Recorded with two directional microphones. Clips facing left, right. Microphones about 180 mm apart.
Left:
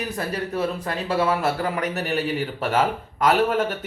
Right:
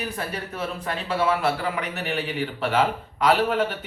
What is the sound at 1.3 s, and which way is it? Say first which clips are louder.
Speech: left 1 dB; 45° left (ahead or behind).